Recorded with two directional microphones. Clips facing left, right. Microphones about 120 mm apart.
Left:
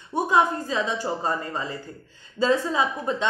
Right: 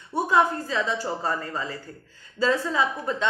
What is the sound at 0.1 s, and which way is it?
A woman's voice, 15° left (ahead or behind).